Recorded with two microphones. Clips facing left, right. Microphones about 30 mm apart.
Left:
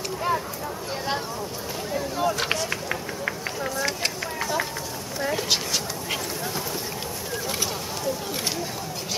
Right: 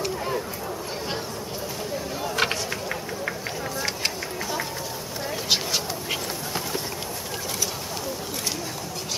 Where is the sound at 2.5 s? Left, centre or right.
Centre.